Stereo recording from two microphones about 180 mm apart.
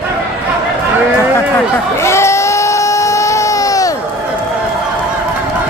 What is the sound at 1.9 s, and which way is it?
Baby cry, 15° left (ahead or behind).